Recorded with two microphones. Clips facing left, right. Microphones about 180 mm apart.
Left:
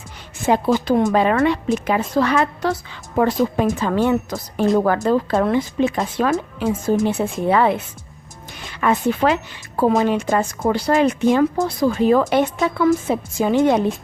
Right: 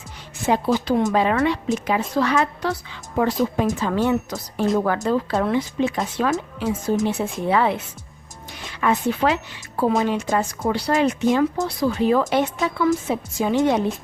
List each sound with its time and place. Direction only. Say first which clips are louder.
0.4 s a woman's voice: left 3 dB; 50° left (ahead or behind)
8.8 s speech: left 2 dB; 55° left (ahead or behind)